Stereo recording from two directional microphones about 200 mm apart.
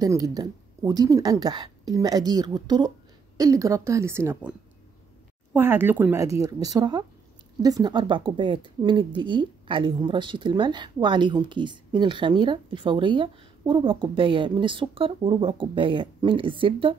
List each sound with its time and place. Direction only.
0.0 s speech: 15° right (ahead or behind)